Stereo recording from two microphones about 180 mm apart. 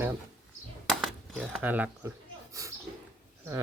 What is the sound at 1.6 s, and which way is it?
Speech, 10° right (ahead or behind).